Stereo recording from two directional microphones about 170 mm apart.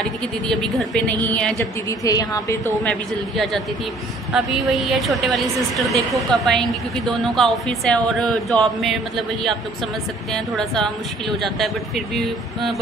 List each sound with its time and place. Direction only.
0.5 s a woman's voice: 5° left (ahead or behind)
1.9 s a woman's voice: 20° left (ahead or behind)
2.8 s speech: 5° left (ahead or behind)